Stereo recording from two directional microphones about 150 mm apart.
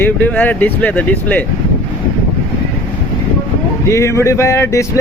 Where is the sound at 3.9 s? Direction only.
20° left (ahead or behind).